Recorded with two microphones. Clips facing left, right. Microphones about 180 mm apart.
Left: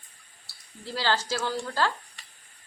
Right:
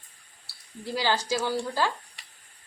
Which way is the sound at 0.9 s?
15° right (ahead or behind).